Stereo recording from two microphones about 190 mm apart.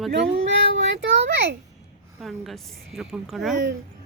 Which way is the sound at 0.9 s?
70° right (ahead or behind).